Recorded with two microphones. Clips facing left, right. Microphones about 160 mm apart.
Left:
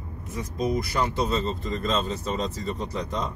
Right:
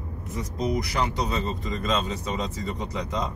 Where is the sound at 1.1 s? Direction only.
15° right (ahead or behind).